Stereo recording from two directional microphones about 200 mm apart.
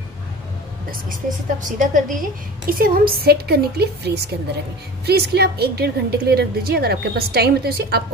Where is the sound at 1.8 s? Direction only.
40° right (ahead or behind).